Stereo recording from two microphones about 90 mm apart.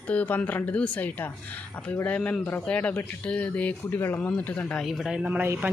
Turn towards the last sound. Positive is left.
turn(degrees=-25)  # may be behind; listen again after turning